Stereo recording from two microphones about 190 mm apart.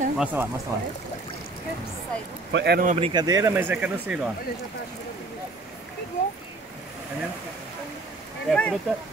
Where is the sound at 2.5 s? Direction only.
60° right (ahead or behind).